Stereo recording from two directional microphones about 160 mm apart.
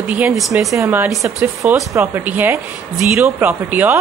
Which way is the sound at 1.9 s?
15° right (ahead or behind).